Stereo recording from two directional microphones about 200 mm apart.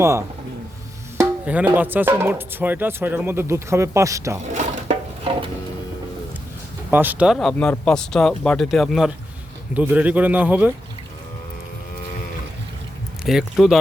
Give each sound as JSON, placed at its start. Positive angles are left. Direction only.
{"t": 0.0, "sound": "speech", "side_deg": -15}
{"t": 1.5, "sound": "speech", "side_deg": -10}
{"t": 4.5, "sound": "a sound", "side_deg": -35}
{"t": 6.9, "sound": "speech", "side_deg": -10}
{"t": 13.2, "sound": "speech", "side_deg": 0}